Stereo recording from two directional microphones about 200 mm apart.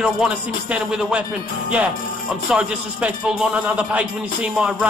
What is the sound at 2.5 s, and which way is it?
Speech, 5° right (ahead or behind).